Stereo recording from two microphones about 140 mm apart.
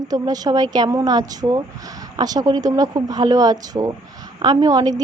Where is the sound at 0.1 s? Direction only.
25° right (ahead or behind).